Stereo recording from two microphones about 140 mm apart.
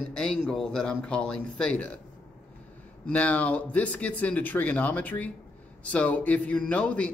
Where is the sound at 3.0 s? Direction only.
10° left (ahead or behind).